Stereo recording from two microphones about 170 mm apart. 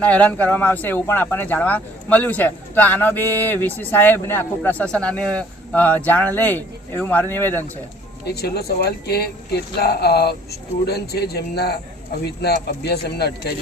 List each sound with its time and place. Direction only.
0.0 s speech: 5° left (ahead or behind)
8.3 s speech: 70° left (ahead or behind)